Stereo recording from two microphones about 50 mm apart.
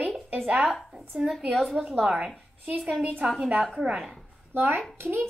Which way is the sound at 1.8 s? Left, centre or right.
Right.